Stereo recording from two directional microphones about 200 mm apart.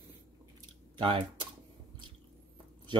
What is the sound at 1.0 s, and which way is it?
Speech, 25° right (ahead or behind).